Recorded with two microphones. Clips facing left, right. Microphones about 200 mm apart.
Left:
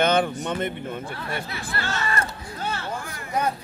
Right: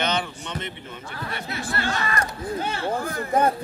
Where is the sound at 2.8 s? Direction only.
50° right (ahead or behind).